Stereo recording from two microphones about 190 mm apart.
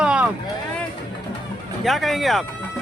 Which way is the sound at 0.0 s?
5° right (ahead or behind).